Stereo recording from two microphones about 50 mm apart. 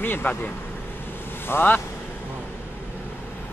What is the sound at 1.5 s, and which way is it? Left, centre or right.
Speech, left.